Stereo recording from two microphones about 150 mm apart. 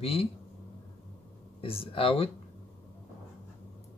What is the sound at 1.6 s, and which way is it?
Speech, 40° left (ahead or behind).